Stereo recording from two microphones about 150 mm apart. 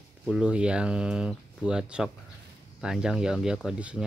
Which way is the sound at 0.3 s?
5° right (ahead or behind).